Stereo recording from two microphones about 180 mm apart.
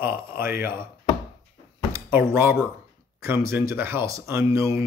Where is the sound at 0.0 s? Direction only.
55° left (ahead or behind).